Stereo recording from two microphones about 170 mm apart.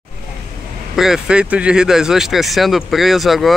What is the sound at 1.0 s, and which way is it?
Speech, 5° right (ahead or behind).